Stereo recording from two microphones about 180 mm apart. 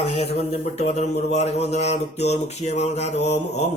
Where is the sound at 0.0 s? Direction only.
35° left (ahead or behind).